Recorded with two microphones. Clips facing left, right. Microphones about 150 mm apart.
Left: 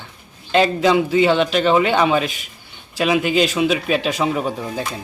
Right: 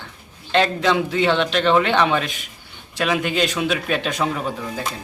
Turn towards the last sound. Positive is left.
turn(degrees=20)  # may be behind; listen again after turning